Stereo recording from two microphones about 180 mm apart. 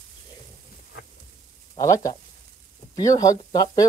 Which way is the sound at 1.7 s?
20° left (ahead or behind).